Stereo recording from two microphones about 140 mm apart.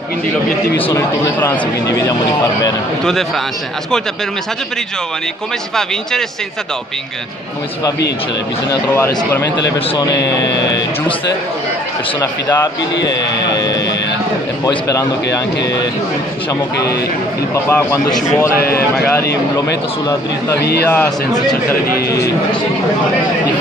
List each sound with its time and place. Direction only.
0.9 s a man's voice: 20° left (ahead or behind)
3.0 s a man's voice: 5° left (ahead or behind)
8.6 s speech: 15° left (ahead or behind)
9.6 s a man's voice: 25° left (ahead or behind)
13.5 s a man's voice: 25° left (ahead or behind)
20.1 s speech: 15° left (ahead or behind)